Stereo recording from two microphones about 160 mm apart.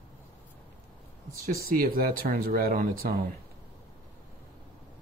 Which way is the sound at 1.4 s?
65° right (ahead or behind).